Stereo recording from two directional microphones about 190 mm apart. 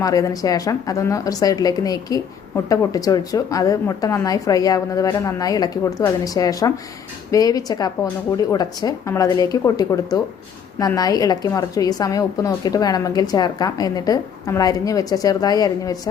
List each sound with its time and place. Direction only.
0.0 s a woman's voice: 20° left (ahead or behind)